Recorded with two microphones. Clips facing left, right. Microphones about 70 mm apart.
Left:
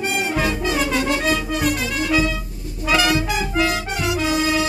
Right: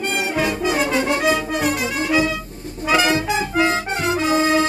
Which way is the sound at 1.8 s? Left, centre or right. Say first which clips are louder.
Right 1 dB; centre.